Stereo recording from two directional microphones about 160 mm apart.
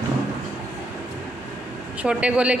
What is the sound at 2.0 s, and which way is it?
Speech, 5° right (ahead or behind).